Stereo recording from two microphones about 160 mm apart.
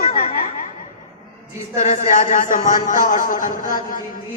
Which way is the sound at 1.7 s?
50° left (ahead or behind).